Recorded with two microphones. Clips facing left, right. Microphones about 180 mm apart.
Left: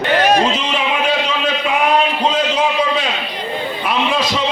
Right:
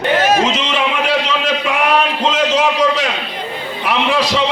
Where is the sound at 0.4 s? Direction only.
85° right.